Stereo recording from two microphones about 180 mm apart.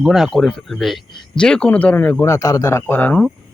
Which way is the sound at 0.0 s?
Centre (ahead or behind).